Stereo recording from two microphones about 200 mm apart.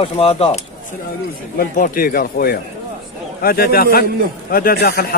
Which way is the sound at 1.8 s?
45° left (ahead or behind).